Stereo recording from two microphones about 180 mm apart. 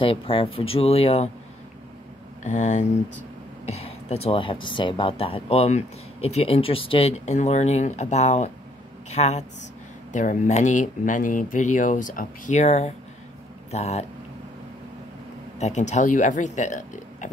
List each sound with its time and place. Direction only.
0.0 s speech: 30° left (ahead or behind)
2.4 s speech: 40° left (ahead or behind)
15.6 s speech: 40° left (ahead or behind)